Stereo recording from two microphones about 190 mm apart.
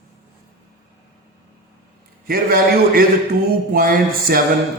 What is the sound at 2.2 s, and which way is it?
A man's voice, 50° right (ahead or behind).